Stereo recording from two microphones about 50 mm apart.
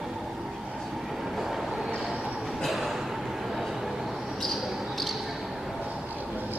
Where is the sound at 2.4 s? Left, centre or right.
Centre.